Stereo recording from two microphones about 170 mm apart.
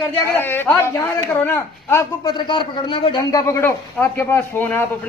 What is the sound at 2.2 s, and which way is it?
A man's voice, 30° left (ahead or behind).